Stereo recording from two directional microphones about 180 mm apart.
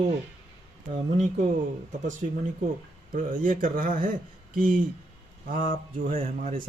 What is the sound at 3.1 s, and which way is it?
Speech, 50° right (ahead or behind).